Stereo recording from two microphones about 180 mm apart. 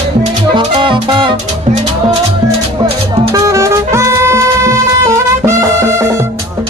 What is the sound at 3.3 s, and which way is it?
Music, 15° right (ahead or behind).